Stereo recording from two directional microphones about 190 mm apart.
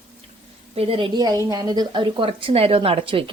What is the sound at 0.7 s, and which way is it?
A woman's voice, 30° right (ahead or behind).